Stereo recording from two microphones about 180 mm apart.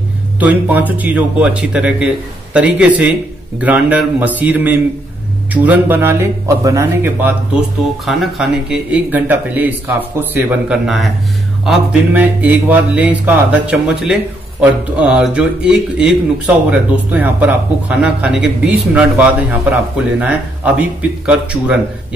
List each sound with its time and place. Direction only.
0.4 s speech: 10° right (ahead or behind)
8.0 s speech: centre (ahead or behind)